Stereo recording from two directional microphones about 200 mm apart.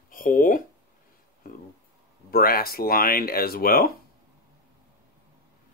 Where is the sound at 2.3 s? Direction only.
50° left (ahead or behind).